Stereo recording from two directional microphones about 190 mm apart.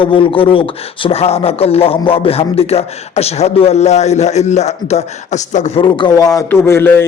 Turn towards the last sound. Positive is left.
turn(degrees=15)  # may be behind; listen again after turning